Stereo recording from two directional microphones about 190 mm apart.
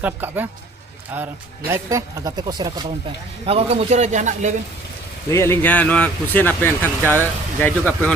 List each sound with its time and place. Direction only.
0.0 s speech: 10° right (ahead or behind)
3.4 s a man's voice: 30° right (ahead or behind)
5.3 s a man's voice: 15° left (ahead or behind)